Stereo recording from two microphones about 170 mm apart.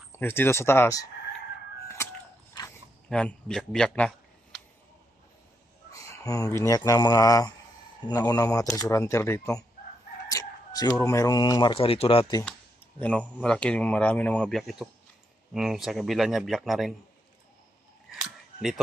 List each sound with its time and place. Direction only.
0.1 s speech: 15° left (ahead or behind)
3.1 s speech: 5° left (ahead or behind)
5.9 s speech: 20° left (ahead or behind)
10.3 s chicken: 20° left (ahead or behind)
11.0 s speech: 20° left (ahead or behind)
13.0 s speech: 10° left (ahead or behind)